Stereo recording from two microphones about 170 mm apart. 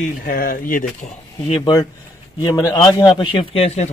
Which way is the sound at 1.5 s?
25° left (ahead or behind).